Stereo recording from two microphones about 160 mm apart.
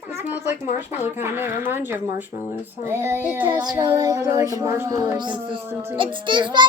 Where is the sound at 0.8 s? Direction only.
15° right (ahead or behind).